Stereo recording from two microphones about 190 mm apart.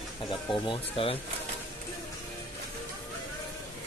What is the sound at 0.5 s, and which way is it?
Speech, 25° left (ahead or behind).